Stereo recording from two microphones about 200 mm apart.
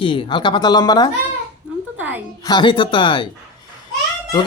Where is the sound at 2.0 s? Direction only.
10° right (ahead or behind).